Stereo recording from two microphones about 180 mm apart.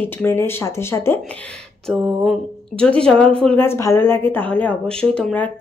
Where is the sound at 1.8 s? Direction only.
Centre (ahead or behind).